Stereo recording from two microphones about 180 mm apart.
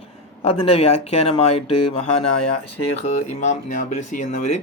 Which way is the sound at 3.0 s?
40° left (ahead or behind).